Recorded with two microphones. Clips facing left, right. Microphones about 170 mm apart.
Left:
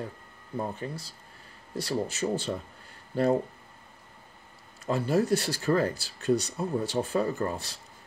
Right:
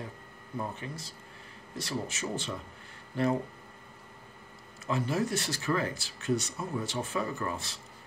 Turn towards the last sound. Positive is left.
turn(degrees=35)  # may be behind; listen again after turning